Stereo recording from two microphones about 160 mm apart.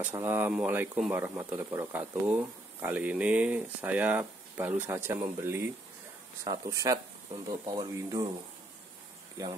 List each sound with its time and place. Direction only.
0.2 s speech: 10° right (ahead or behind)
9.4 s speech: 20° right (ahead or behind)